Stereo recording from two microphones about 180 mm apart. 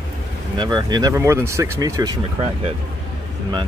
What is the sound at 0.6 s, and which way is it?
Speech, 25° right (ahead or behind).